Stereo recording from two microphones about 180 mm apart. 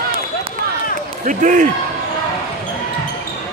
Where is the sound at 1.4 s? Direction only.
45° right (ahead or behind).